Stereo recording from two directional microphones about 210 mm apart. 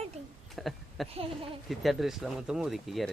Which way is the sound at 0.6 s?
Centre (ahead or behind).